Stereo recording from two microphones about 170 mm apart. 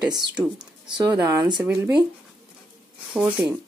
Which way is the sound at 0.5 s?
25° right (ahead or behind).